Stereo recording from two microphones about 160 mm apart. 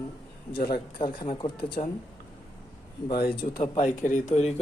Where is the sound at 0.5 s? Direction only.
70° left (ahead or behind).